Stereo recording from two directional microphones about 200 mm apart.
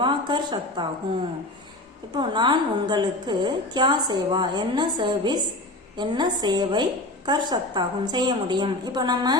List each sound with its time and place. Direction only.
0.0 s a woman's voice: 20° right (ahead or behind)
2.1 s a woman's voice: 20° right (ahead or behind)